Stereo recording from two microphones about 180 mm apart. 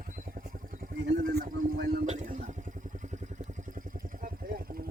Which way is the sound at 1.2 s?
55° right (ahead or behind).